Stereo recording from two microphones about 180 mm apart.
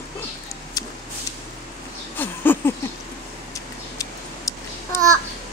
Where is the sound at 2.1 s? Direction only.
10° left (ahead or behind).